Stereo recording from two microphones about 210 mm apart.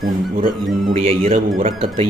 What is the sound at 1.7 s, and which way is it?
Speech, 25° right (ahead or behind).